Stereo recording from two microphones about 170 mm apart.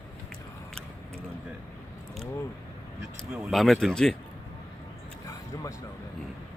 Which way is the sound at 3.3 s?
Centre (ahead or behind).